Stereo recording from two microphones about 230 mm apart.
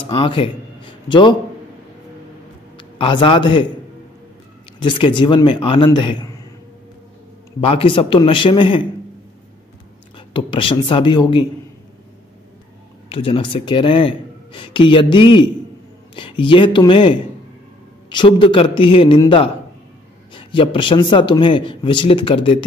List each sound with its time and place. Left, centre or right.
0.1 s speech: left
2.8 s a man's voice: left
4.8 s speech: left
7.6 s speech: left
10.1 s speech: left
13.1 s speech: left